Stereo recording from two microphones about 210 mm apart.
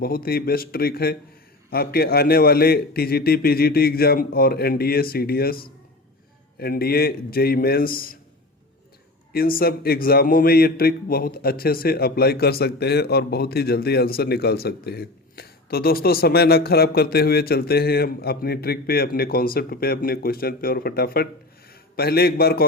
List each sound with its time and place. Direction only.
0.0 s a man's voice: 45° left (ahead or behind)
9.3 s a man's voice: 45° left (ahead or behind)